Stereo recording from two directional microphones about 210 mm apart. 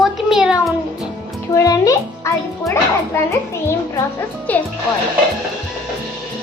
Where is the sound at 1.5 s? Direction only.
15° left (ahead or behind).